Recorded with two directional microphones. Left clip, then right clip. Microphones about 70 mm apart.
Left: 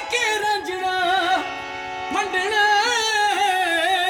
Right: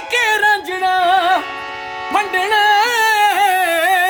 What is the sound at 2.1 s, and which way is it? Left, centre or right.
Music, right.